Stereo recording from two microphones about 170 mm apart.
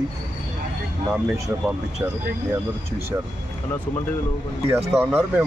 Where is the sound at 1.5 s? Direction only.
15° right (ahead or behind).